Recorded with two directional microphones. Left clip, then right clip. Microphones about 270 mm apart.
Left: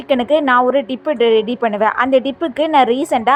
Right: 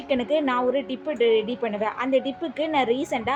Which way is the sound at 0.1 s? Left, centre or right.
Left.